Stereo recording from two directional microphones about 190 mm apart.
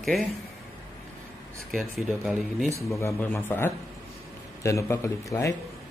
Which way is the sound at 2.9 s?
15° left (ahead or behind).